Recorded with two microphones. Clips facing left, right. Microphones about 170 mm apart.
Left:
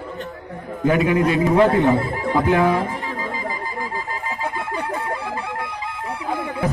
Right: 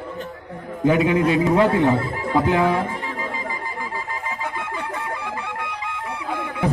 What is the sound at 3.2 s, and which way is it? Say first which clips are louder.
Music: left 2 dB; 35° left (ahead or behind).